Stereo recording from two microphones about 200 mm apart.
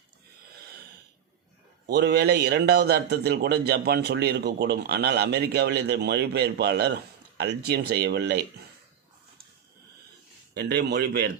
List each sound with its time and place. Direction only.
1.9 s a man's voice: 55° right (ahead or behind)
10.5 s a man's voice: 55° right (ahead or behind)